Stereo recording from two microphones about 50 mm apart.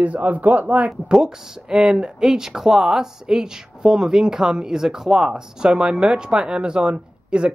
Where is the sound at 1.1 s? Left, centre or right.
Centre.